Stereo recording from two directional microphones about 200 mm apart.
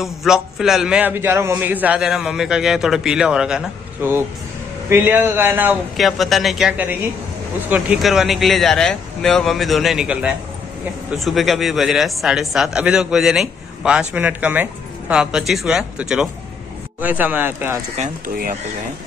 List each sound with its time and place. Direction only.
0.0 s a man's voice: centre (ahead or behind)
17.9 s speech: 40° right (ahead or behind)